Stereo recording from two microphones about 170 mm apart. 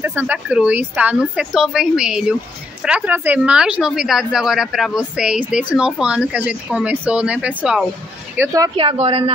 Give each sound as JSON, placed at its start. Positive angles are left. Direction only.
{"t": 0.0, "sound": "a woman's voice", "side_deg": -10}
{"t": 8.4, "sound": "a woman's voice", "side_deg": -20}
{"t": 8.7, "sound": "speech", "side_deg": -35}